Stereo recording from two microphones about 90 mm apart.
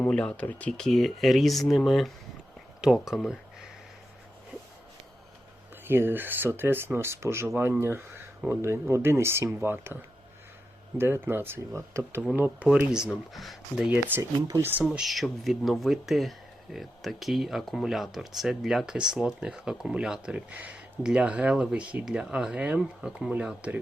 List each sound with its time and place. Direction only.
0.0 s speech: 10° left (ahead or behind)
0.7 s speech: 5° left (ahead or behind)
5.8 s speech: 25° right (ahead or behind)
12.7 s speech: 10° right (ahead or behind)
13.3 s speech: centre (ahead or behind)
13.8 s speech: 20° right (ahead or behind)
14.2 s speech: 40° right (ahead or behind)
14.6 s speech: 20° right (ahead or behind)
14.9 s speech: centre (ahead or behind)